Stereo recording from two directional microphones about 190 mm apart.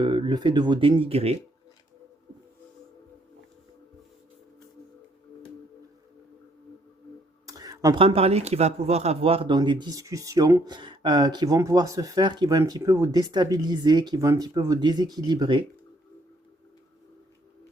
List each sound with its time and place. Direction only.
0.0 s speech: 25° right (ahead or behind)
7.4 s speech: 20° right (ahead or behind)